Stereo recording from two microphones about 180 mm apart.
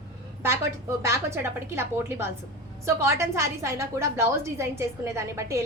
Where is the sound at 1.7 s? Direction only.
15° right (ahead or behind).